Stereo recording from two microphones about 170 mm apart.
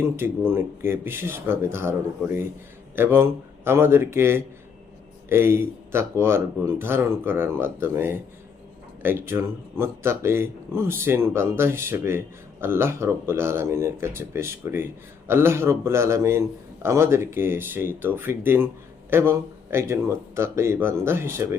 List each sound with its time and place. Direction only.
0.2 s a man's voice: 15° right (ahead or behind)